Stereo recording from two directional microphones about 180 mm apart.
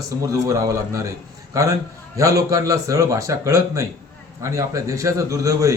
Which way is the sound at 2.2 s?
20° right (ahead or behind).